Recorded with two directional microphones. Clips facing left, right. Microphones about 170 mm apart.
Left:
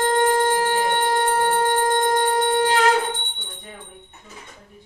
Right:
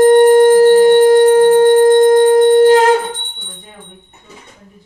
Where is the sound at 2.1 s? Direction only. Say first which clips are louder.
Right 12 dB; 45° right (ahead or behind).